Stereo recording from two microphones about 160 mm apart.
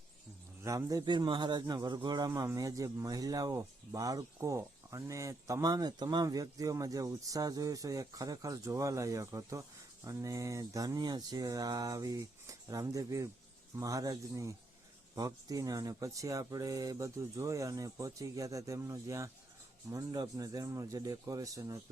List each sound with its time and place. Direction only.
0.6 s speech: 20° right (ahead or behind)